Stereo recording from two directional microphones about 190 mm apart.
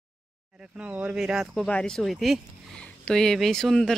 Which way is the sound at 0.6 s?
5° right (ahead or behind).